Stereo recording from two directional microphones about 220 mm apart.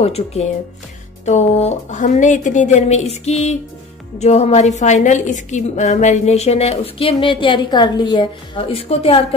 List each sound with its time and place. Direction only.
0.0 s a woman's voice: 30° left (ahead or behind)